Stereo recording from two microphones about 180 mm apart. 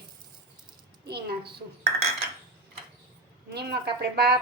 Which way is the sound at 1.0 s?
65° right (ahead or behind).